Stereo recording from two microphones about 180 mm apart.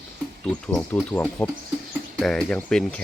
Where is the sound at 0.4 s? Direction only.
10° left (ahead or behind).